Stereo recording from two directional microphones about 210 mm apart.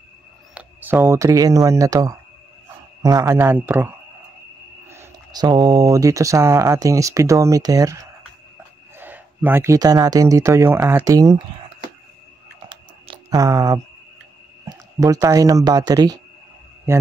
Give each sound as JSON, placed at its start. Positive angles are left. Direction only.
{"t": 0.6, "sound": "speech", "side_deg": -5}
{"t": 12.6, "sound": "a sound", "side_deg": -25}
{"t": 14.6, "sound": "speech", "side_deg": -15}